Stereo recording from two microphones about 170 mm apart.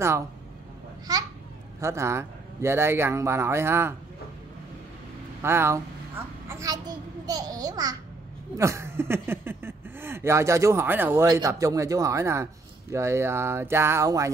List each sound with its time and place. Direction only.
1.8 s a man's voice: 15° right (ahead or behind)
5.4 s a man's voice: 15° right (ahead or behind)